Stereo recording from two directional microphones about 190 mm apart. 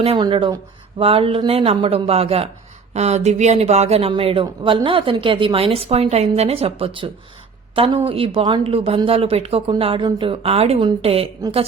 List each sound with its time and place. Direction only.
0.0 s speech: 25° right (ahead or behind)